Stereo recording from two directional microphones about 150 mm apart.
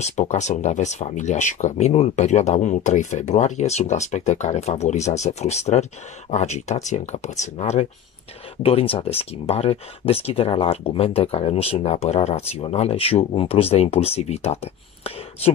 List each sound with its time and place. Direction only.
0.0 s speech: 50° left (ahead or behind)